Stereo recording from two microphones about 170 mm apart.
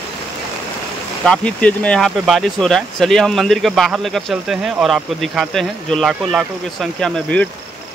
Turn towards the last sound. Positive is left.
turn(degrees=5)  # may be behind; listen again after turning